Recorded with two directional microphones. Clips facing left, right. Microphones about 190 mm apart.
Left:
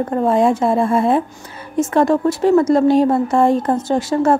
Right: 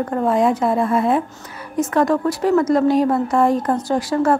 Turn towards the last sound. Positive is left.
turn(degrees=25)  # may be behind; listen again after turning